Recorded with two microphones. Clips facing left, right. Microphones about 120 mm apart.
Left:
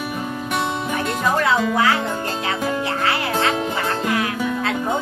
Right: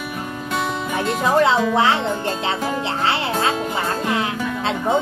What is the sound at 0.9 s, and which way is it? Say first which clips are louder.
Music: right 4 dB; 25° right (ahead or behind).